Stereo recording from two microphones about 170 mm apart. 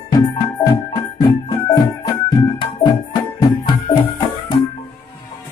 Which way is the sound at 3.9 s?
30° left (ahead or behind).